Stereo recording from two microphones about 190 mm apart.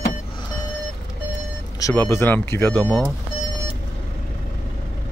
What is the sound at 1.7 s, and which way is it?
Speech, 15° left (ahead or behind).